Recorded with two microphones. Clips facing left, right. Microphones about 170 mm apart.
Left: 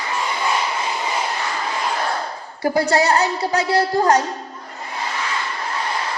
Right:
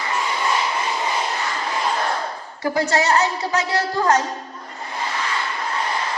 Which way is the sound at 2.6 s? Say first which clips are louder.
Left 2 dB; 35° left (ahead or behind).